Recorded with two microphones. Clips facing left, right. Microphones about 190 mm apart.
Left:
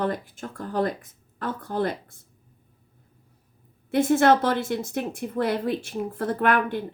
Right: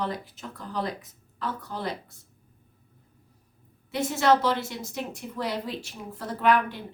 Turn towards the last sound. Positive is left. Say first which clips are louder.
# left 1 dB
turn(degrees=55)  # may be behind; listen again after turning